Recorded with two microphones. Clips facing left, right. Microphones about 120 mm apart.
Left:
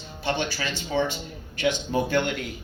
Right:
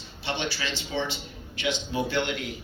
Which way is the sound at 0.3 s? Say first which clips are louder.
Left 3 dB; 45° left (ahead or behind).